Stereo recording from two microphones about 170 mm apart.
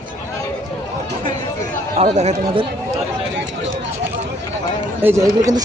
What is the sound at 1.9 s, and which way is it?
Speech, 40° right (ahead or behind).